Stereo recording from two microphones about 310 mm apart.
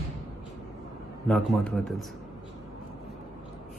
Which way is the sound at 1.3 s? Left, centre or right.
Centre.